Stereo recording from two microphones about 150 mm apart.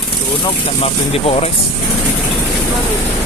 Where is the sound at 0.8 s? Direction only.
45° left (ahead or behind).